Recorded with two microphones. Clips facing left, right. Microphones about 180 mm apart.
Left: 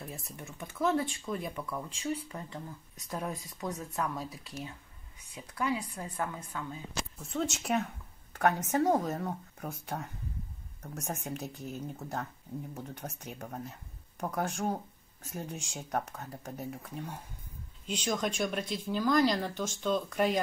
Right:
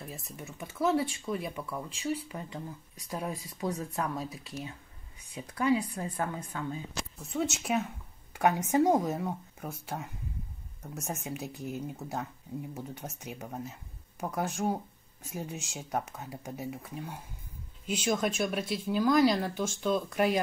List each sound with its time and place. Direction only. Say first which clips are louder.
0.0 s a woman's voice: right 1 dB; centre (ahead or behind)
3.9 s a woman's voice: right 1 dB; 25° right (ahead or behind)
7.2 s a woman's voice: right 2 dB; 5° right (ahead or behind)